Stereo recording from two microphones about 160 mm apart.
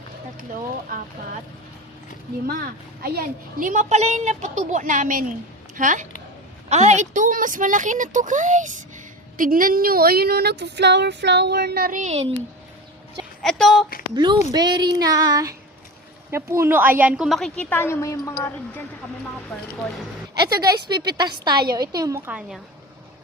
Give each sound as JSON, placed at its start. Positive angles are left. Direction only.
{"t": 2.5, "sound": "a woman's voice", "side_deg": -70}
{"t": 13.4, "sound": "speech", "side_deg": 0}
{"t": 14.1, "sound": "a woman's voice", "side_deg": -25}
{"t": 20.5, "sound": "speech", "side_deg": -25}
{"t": 22.3, "sound": "a woman's voice", "side_deg": -5}